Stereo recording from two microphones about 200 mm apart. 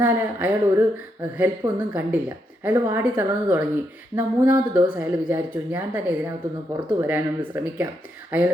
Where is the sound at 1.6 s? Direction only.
20° right (ahead or behind).